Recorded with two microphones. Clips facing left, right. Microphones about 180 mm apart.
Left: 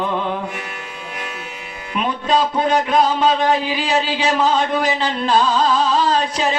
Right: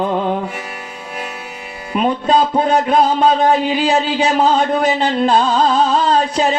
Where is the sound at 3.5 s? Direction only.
55° right (ahead or behind).